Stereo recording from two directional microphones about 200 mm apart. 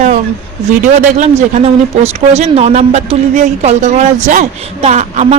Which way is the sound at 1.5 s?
30° right (ahead or behind).